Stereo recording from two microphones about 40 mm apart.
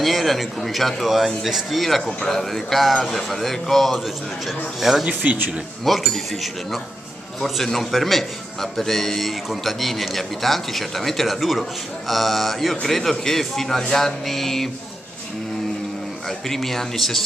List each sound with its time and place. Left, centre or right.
0.0 s speech: centre
5.2 s speech: right
5.9 s speech: centre
7.3 s a man's voice: centre
16.3 s a man's voice: centre